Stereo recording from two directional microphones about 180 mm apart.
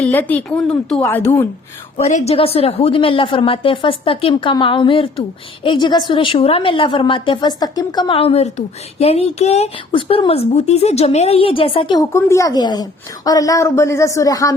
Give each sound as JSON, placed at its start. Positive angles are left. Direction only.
{"t": 0.0, "sound": "a woman's voice", "side_deg": 10}
{"t": 2.0, "sound": "a woman's voice", "side_deg": 35}
{"t": 12.1, "sound": "a woman's voice", "side_deg": 15}